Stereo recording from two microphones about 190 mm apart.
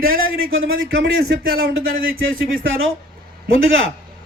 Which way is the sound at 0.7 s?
55° right (ahead or behind).